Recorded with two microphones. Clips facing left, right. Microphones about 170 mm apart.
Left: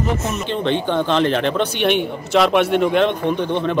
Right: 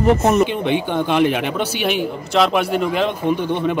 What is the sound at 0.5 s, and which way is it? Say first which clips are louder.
A man's voice: even; 10° right (ahead or behind).